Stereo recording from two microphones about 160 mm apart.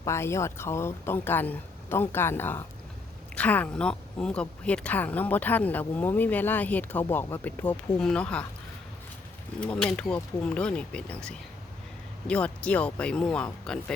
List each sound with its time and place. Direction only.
0.0 s speech: 15° left (ahead or behind)
9.6 s speech: 5° left (ahead or behind)